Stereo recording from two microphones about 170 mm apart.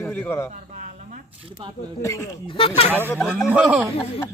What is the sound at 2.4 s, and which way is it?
Speech, 30° left (ahead or behind).